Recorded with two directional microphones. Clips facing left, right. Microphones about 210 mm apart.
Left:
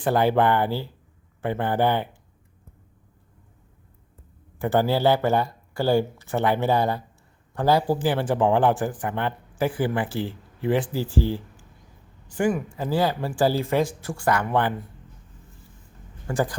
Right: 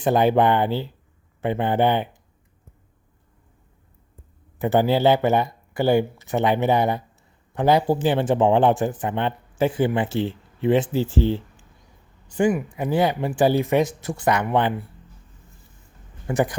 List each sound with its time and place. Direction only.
0.0 s speech: 20° right (ahead or behind)
4.6 s speech: 20° right (ahead or behind)
16.2 s speech: 20° right (ahead or behind)